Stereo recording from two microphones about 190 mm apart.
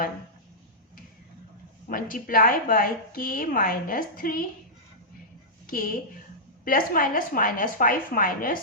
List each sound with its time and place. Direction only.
1.9 s a woman's voice: 50° left (ahead or behind)
5.6 s a woman's voice: 50° left (ahead or behind)